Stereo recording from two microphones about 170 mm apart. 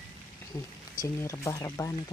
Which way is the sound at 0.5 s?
15° left (ahead or behind).